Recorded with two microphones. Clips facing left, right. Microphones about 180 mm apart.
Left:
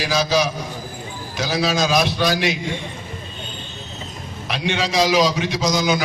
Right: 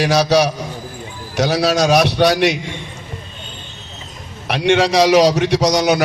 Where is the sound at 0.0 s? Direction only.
70° right (ahead or behind).